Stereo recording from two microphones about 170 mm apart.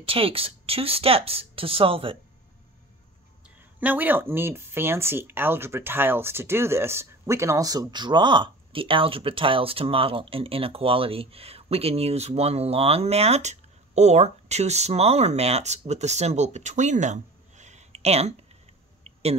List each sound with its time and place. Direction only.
0.0 s speech: 35° right (ahead or behind)
3.4 s speech: 10° right (ahead or behind); by 18.3 s 40° right (ahead or behind)